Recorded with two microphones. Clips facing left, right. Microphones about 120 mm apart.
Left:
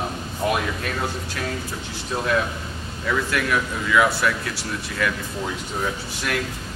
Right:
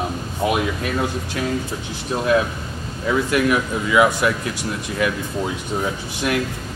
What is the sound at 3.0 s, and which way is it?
Speech, 20° right (ahead or behind).